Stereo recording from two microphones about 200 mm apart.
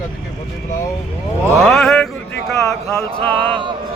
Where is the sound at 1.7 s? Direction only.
Centre (ahead or behind).